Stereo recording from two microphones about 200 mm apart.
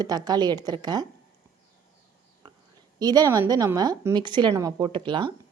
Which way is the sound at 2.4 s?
25° right (ahead or behind).